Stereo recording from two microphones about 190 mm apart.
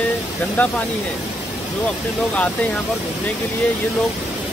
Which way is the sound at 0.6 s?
10° left (ahead or behind).